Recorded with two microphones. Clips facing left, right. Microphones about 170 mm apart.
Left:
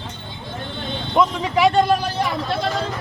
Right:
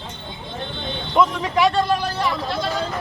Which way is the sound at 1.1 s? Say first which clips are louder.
Even; centre (ahead or behind).